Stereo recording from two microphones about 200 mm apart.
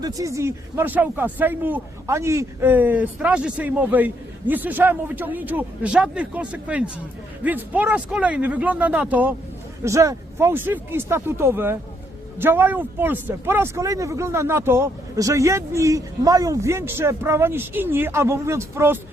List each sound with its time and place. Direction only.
0.0 s speech: 15° right (ahead or behind)